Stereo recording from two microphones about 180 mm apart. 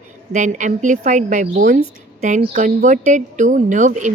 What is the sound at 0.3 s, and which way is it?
A woman's voice, 45° right (ahead or behind).